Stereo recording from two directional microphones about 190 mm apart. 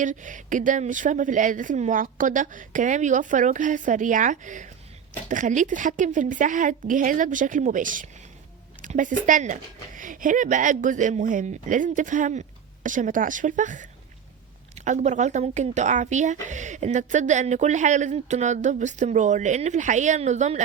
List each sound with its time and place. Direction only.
0.0 s speech: 40° right (ahead or behind)